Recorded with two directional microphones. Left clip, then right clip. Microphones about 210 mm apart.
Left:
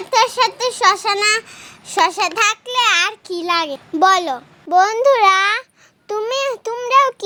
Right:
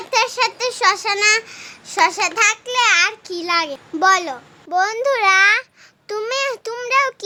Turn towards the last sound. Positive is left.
turn(degrees=20)  # may be behind; listen again after turning